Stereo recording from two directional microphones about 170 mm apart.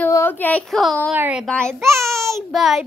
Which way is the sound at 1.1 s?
10° right (ahead or behind).